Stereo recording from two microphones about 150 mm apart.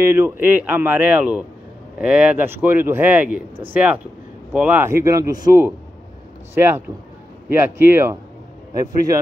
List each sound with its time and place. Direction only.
0.0 s speech: 15° right (ahead or behind)